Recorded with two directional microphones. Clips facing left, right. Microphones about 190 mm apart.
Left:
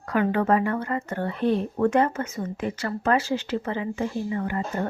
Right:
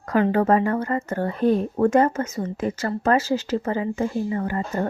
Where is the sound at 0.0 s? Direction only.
40° right (ahead or behind).